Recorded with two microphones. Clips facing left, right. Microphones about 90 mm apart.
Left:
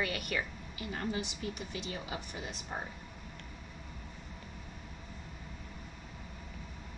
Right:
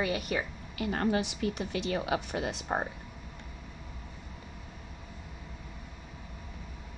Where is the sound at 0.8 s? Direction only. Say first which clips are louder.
Right 8 dB; 70° right (ahead or behind).